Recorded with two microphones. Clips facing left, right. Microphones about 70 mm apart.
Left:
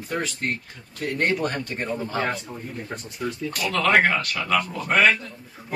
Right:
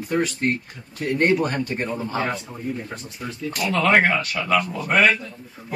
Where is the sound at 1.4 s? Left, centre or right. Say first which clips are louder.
Right 3 dB; centre.